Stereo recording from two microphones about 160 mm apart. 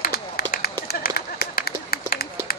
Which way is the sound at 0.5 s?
70° left (ahead or behind).